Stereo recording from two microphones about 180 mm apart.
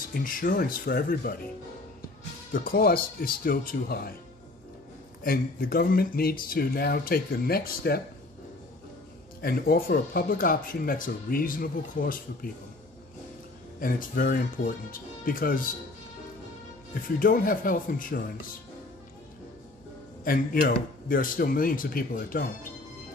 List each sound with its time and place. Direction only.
0.1 s speech: 50° left (ahead or behind)
2.5 s speech: 55° left (ahead or behind)
5.2 s speech: 55° left (ahead or behind)
9.4 s speech: 55° left (ahead or behind)
13.7 s speech: 50° left (ahead or behind)
17.2 s speech: 55° left (ahead or behind)
20.2 s speech: 50° left (ahead or behind)